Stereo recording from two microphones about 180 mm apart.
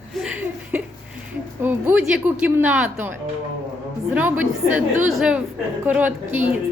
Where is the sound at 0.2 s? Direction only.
5° right (ahead or behind).